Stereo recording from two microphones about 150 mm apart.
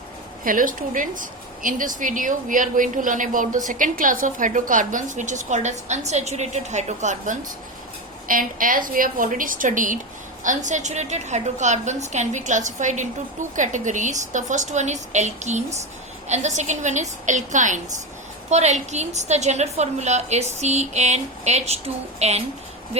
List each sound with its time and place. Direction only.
0.4 s a woman's voice: 65° right (ahead or behind)
8.3 s a woman's voice: 65° right (ahead or behind); by 22.4 s 45° right (ahead or behind)